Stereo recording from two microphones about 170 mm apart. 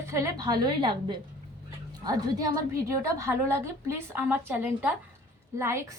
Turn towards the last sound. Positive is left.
turn(degrees=-15)  # may be behind; listen again after turning